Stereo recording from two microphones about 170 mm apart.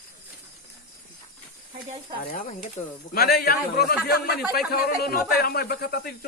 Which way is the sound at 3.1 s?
65° left (ahead or behind).